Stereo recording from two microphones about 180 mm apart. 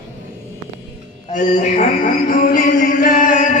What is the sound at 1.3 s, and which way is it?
Music, 45° left (ahead or behind).